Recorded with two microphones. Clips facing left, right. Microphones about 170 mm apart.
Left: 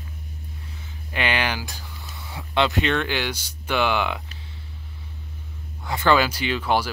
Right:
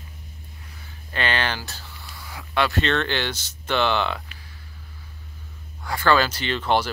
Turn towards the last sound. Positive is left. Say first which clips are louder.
# even
turn(degrees=10)  # may be behind; listen again after turning